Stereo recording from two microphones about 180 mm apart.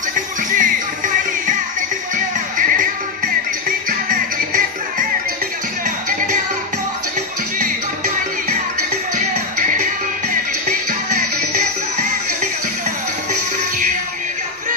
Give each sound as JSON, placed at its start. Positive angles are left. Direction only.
{"t": 0.1, "sound": "music", "side_deg": -45}
{"t": 3.6, "sound": "music", "side_deg": -50}
{"t": 11.5, "sound": "music", "side_deg": -45}